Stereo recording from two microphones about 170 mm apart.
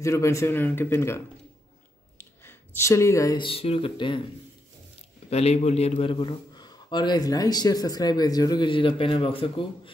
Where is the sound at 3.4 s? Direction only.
35° left (ahead or behind).